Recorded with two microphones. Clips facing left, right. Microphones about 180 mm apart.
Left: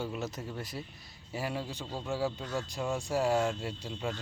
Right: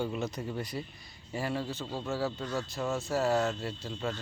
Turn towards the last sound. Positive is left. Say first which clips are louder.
# right 1 dB
turn(degrees=10)  # may be behind; listen again after turning